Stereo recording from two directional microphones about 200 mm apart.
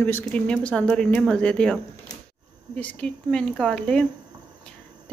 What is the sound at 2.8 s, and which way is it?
Speech, 5° left (ahead or behind).